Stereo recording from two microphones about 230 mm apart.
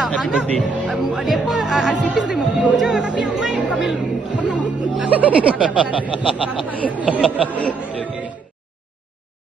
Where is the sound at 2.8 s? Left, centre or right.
Centre.